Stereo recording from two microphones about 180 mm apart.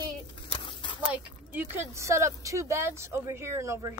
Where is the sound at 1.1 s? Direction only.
10° right (ahead or behind).